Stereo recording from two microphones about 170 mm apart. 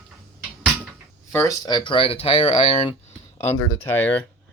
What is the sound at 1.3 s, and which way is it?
Speech, 15° left (ahead or behind).